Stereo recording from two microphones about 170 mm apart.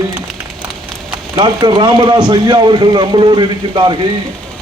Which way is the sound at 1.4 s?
25° right (ahead or behind).